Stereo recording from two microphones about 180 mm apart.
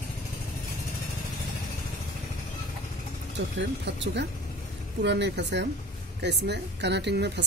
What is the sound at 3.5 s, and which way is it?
A woman's voice, 75° right (ahead or behind).